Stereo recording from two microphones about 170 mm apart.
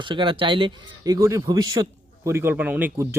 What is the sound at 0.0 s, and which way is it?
A man's voice, 30° right (ahead or behind).